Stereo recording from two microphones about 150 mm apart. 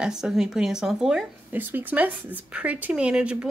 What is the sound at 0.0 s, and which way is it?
Speech, 5° right (ahead or behind).